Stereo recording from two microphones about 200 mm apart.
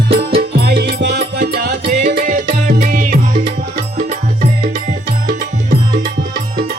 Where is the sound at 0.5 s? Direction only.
55° right (ahead or behind).